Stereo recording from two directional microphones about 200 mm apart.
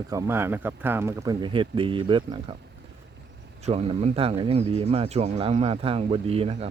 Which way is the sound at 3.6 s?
30° right (ahead or behind).